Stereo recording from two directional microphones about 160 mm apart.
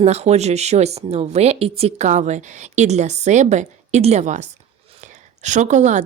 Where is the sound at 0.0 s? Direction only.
45° right (ahead or behind).